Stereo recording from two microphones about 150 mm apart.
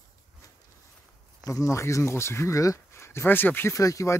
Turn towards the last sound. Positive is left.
turn(degrees=20)  # may be behind; listen again after turning